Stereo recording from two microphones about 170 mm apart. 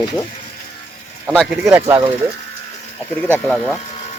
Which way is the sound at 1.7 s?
15° right (ahead or behind).